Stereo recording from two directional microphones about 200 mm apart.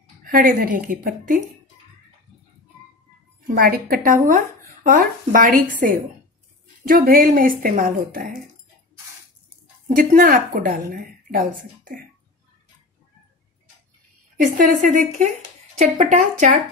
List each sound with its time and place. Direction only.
0.2 s speech: 45° right (ahead or behind)
3.4 s speech: 45° right (ahead or behind)
9.8 s speech: 45° right (ahead or behind)
14.6 s a woman's voice: 40° right (ahead or behind)